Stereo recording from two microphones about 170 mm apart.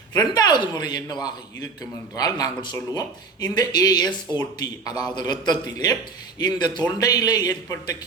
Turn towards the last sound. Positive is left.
turn(degrees=20)  # may be behind; listen again after turning